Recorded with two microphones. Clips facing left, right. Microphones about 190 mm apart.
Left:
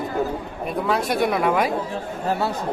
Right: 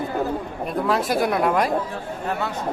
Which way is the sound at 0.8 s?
Centre (ahead or behind).